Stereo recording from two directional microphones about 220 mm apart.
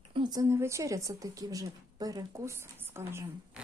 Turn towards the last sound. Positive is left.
turn(degrees=-10)  # may be behind; listen again after turning